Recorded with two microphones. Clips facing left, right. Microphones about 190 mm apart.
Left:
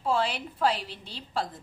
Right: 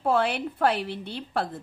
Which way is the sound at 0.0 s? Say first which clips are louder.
Right 4 dB; 60° right (ahead or behind).